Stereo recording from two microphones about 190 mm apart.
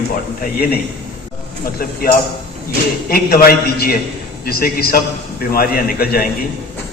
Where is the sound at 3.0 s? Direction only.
50° left (ahead or behind).